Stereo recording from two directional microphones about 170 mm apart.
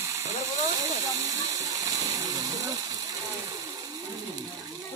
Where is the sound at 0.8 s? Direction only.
20° right (ahead or behind).